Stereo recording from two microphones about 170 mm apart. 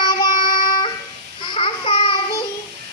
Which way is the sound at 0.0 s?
25° left (ahead or behind).